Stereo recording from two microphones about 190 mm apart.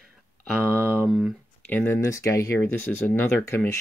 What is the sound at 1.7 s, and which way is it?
Speech, 10° left (ahead or behind).